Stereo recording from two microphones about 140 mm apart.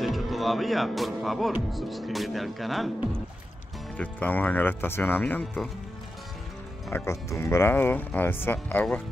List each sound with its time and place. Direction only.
0.0 s speech: centre (ahead or behind)
3.9 s speech: 10° left (ahead or behind)
6.9 s speech: 20° left (ahead or behind)